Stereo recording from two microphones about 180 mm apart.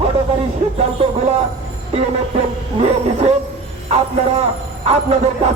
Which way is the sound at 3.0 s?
35° right (ahead or behind).